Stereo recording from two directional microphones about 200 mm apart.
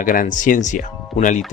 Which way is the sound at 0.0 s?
45° left (ahead or behind).